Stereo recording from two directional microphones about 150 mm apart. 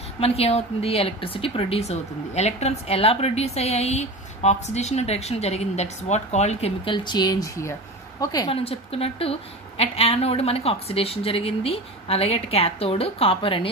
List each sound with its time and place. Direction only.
0.2 s a woman's voice: 45° left (ahead or behind); by 8.5 s 25° left (ahead or behind)
8.6 s a woman's voice: 40° left (ahead or behind)